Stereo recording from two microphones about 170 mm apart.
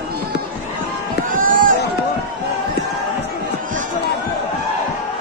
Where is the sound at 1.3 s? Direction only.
50° right (ahead or behind).